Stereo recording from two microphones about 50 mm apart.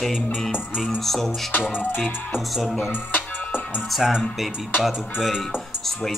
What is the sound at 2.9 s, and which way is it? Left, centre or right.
Music, left.